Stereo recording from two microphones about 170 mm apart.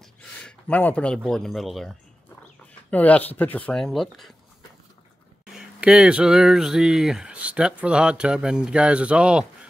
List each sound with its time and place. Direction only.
0.4 s speech: 5° left (ahead or behind)
5.5 s speech: 5° right (ahead or behind)